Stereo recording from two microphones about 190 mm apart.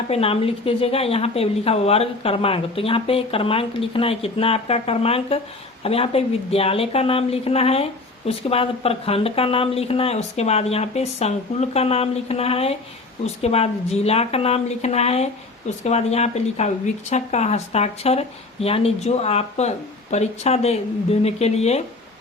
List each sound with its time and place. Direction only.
0.1 s speech: 30° left (ahead or behind)